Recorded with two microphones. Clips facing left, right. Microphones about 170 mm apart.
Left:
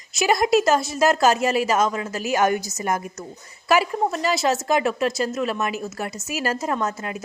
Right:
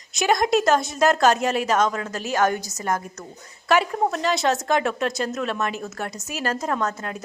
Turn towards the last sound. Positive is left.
turn(degrees=5)  # may be behind; listen again after turning